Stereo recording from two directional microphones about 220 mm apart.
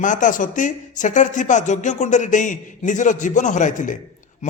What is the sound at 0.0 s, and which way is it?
A man's voice, 35° left (ahead or behind).